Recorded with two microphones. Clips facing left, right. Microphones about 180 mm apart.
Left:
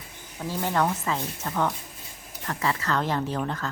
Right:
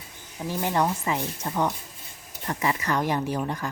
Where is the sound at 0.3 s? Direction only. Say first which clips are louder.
Right 1 dB; 15° right (ahead or behind).